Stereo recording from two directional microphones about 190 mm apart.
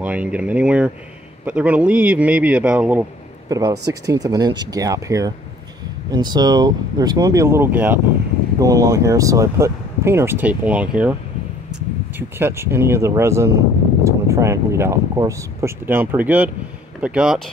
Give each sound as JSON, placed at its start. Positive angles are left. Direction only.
{"t": 0.0, "sound": "speech", "side_deg": -5}
{"t": 3.4, "sound": "speech", "side_deg": -20}
{"t": 12.2, "sound": "speech", "side_deg": -10}